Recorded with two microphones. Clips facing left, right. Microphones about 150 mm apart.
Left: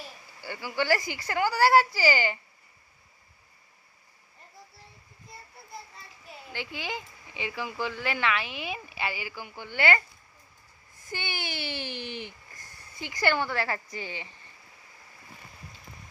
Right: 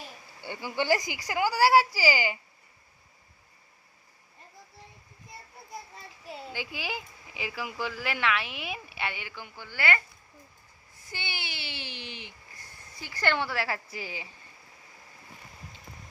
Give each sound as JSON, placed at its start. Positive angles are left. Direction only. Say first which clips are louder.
{"t": 0.4, "sound": "a woman's voice", "louder": "even", "side_deg": -20}
{"t": 6.5, "sound": "speech", "louder": "left 2 dB", "side_deg": -10}
{"t": 11.1, "sound": "speech", "louder": "left 4 dB", "side_deg": 50}
{"t": 13.0, "sound": "a woman's voice", "louder": "left 5 dB", "side_deg": 20}
{"t": 13.2, "sound": "speech", "louder": "left 2 dB", "side_deg": 0}